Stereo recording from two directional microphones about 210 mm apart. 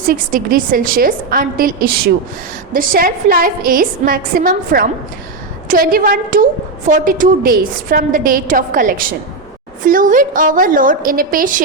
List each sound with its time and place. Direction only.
0.1 s a woman's voice: 40° right (ahead or behind)